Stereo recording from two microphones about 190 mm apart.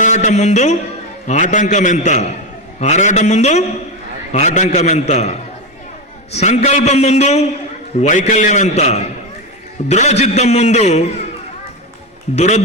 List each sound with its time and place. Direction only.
0.0 s a man's voice: 40° left (ahead or behind)
12.4 s a man's voice: 35° left (ahead or behind)